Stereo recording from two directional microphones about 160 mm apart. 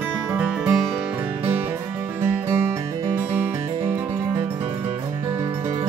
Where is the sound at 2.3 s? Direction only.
15° right (ahead or behind).